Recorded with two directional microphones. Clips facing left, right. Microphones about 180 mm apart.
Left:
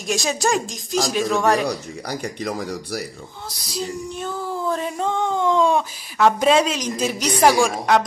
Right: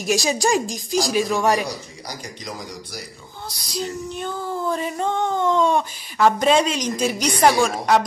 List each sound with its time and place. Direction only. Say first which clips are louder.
0.0 s female singing: right 2 dB; centre (ahead or behind)
1.7 s speech: left 6 dB; 60° left (ahead or behind)
3.4 s female singing: right 1 dB; centre (ahead or behind)